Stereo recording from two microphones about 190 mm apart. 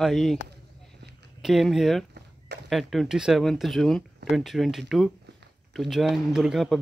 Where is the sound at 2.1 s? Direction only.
60° right (ahead or behind).